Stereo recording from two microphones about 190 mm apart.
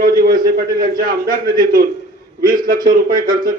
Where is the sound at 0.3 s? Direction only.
50° right (ahead or behind).